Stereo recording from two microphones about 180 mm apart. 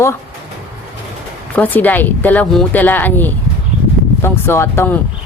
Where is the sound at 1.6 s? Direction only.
10° left (ahead or behind).